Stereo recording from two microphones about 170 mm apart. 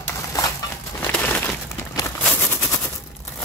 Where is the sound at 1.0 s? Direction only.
10° left (ahead or behind).